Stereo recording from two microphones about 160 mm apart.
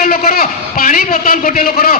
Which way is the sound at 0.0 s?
65° left (ahead or behind).